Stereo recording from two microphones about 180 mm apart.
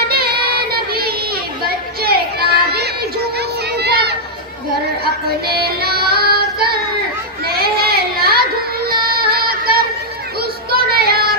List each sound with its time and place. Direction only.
0.1 s child singing: 60° right (ahead or behind)
1.6 s children playing: 60° right (ahead or behind)
5.5 s music: 60° right (ahead or behind)
7.4 s child singing: 60° right (ahead or behind)
8.8 s music: 60° right (ahead or behind)
10.7 s child singing: 60° right (ahead or behind)